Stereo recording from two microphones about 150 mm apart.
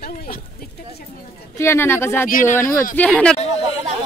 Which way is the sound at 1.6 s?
15° left (ahead or behind).